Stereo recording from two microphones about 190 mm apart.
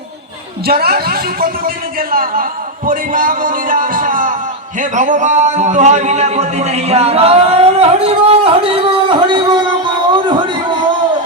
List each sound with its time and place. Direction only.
0.6 s a man's voice: 55° right (ahead or behind); by 10.8 s 25° right (ahead or behind)